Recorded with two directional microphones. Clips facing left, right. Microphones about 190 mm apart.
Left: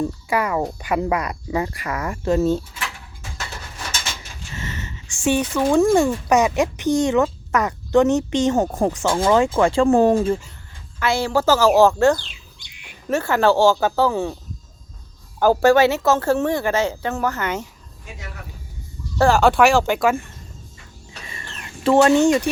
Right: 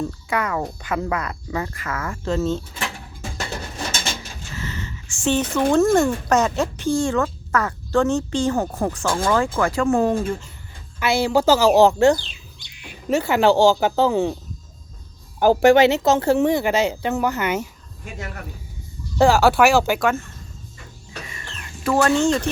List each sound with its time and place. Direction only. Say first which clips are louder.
0.1 s speech: left 2 dB; 10° left (ahead or behind)
2.7 s pigeon: right 3 dB; 30° right (ahead or behind)
4.5 s speech: even; 25° left (ahead or behind)
11.0 s speech: right 1 dB; 10° right (ahead or behind)
15.4 s speech: right 1 dB; 20° right (ahead or behind)
19.2 s speech: even; 5° right (ahead or behind)
21.8 s speech: left 4 dB; 25° left (ahead or behind)